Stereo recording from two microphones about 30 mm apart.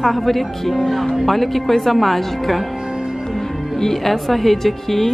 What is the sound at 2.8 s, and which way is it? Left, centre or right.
Music, right.